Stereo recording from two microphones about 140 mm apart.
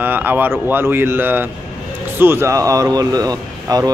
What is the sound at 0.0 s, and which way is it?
Speech, 15° right (ahead or behind).